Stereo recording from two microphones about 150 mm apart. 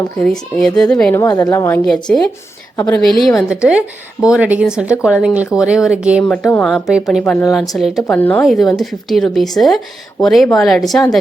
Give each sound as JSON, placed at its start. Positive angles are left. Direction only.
{"t": 0.2, "sound": "speech", "side_deg": 5}
{"t": 1.1, "sound": "a woman's voice", "side_deg": 20}
{"t": 1.8, "sound": "speech", "side_deg": 5}
{"t": 6.2, "sound": "speech", "side_deg": 5}
{"t": 8.0, "sound": "speech", "side_deg": 10}
{"t": 8.4, "sound": "speech", "side_deg": 0}